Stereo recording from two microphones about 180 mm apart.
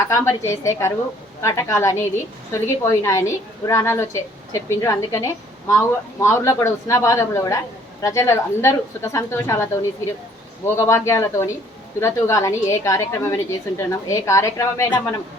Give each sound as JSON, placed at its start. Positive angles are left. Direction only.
{"t": 0.1, "sound": "a woman's voice", "side_deg": 15}
{"t": 10.8, "sound": "a woman's voice", "side_deg": 15}